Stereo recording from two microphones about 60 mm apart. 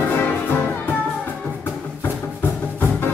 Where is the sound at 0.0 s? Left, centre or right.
Left.